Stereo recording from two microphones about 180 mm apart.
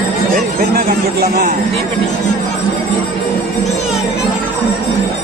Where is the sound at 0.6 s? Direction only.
60° right (ahead or behind).